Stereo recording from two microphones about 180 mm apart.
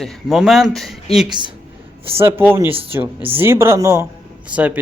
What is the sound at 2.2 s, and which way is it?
Speech, 15° right (ahead or behind).